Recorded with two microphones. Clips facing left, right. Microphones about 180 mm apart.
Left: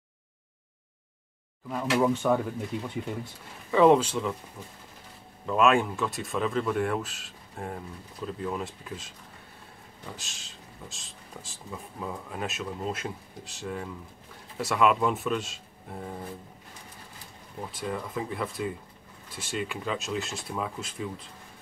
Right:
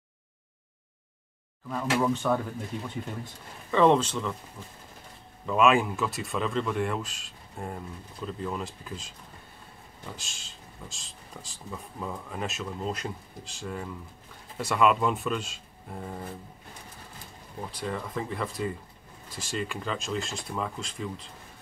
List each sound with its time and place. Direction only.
1.7 s speech: 10° left (ahead or behind)
3.7 s speech: 10° left (ahead or behind)
5.5 s speech: centre (ahead or behind)
17.6 s speech: 5° left (ahead or behind)